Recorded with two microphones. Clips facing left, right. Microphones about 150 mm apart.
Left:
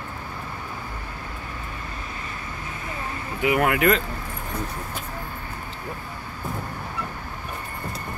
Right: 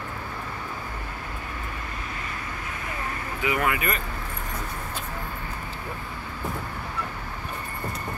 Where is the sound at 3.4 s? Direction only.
60° left (ahead or behind); by 4.0 s 80° left.